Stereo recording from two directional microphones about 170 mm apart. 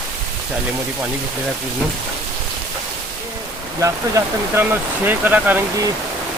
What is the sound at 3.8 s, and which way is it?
Speech, 15° right (ahead or behind).